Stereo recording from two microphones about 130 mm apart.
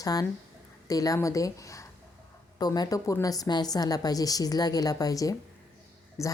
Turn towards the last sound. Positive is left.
turn(degrees=25)  # may be behind; listen again after turning